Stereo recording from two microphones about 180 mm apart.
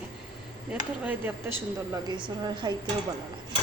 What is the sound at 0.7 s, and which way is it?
Speech, 10° right (ahead or behind).